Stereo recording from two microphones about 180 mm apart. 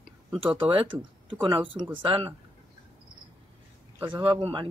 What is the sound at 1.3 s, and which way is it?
Speech, 25° right (ahead or behind).